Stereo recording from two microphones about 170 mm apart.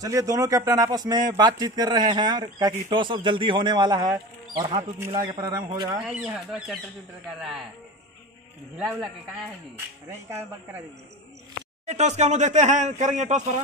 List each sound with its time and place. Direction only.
0.0 s a man's voice: 20° right (ahead or behind)
6.0 s speech: 5° right (ahead or behind)
8.9 s speech: 5° left (ahead or behind)
10.0 s speech: 15° right (ahead or behind)
11.8 s speech: 40° right (ahead or behind)